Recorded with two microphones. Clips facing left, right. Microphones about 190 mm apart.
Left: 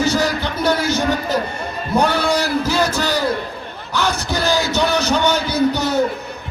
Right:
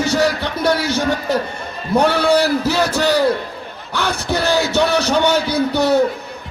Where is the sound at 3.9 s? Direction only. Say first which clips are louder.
Right 1 dB; 60° right (ahead or behind).